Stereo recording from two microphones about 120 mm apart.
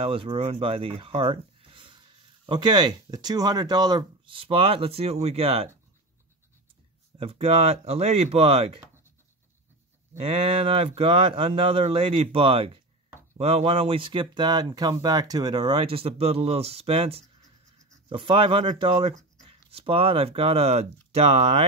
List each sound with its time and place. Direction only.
0.0 s speech: 50° right (ahead or behind)
7.2 s speech: 55° right (ahead or behind)
10.2 s speech: 55° right (ahead or behind)